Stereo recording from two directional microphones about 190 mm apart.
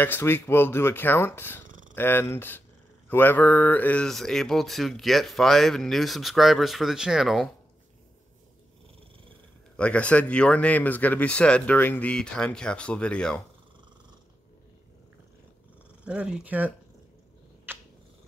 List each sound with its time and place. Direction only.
0.0 s speech: 10° left (ahead or behind)
1.7 s purr: 45° right (ahead or behind)
2.0 s speech: 10° left (ahead or behind)
9.8 s speech: 5° left (ahead or behind)
16.0 s speech: 5° right (ahead or behind)
17.7 s purr: 10° right (ahead or behind)